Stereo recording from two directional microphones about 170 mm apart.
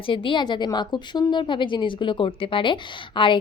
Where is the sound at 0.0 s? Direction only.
30° left (ahead or behind).